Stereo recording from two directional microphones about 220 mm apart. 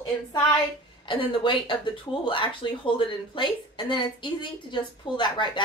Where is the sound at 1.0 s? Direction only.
20° left (ahead or behind).